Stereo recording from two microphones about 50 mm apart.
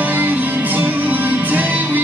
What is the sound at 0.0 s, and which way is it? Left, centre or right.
Music, right.